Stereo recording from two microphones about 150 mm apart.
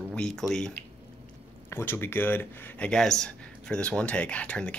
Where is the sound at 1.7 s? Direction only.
15° left (ahead or behind).